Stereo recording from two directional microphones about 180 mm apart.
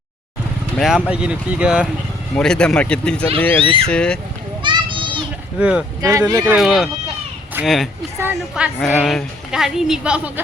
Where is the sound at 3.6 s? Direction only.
30° right (ahead or behind).